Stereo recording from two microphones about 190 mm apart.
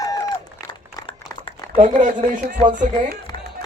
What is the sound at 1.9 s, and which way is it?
Speech, 45° right (ahead or behind).